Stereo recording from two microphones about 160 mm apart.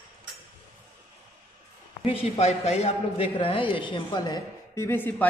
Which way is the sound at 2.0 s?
40° left (ahead or behind).